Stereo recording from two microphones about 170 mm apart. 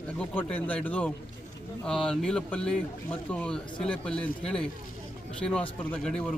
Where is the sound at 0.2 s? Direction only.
10° left (ahead or behind).